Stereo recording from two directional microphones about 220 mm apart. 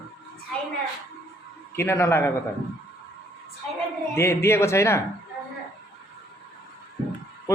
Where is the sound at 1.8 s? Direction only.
10° left (ahead or behind).